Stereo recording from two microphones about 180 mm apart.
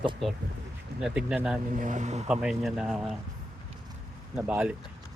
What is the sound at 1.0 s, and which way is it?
Speech, 5° right (ahead or behind).